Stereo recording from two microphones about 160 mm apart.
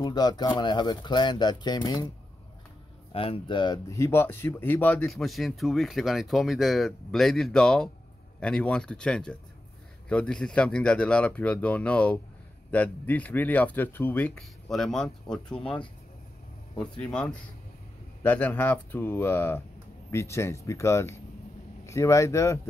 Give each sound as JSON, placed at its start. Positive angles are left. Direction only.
{"t": 0.0, "sound": "speech", "side_deg": 25}
{"t": 3.1, "sound": "speech", "side_deg": 35}
{"t": 17.0, "sound": "speech", "side_deg": 5}